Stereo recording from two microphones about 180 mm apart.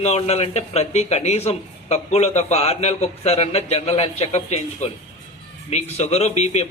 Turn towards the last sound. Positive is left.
turn(degrees=35)  # may be behind; listen again after turning